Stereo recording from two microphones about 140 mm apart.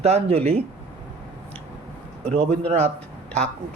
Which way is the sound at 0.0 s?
45° right (ahead or behind).